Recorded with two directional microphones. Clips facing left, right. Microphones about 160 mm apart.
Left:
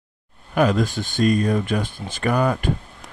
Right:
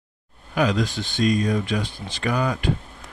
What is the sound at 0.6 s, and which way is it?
Speech, 50° left (ahead or behind).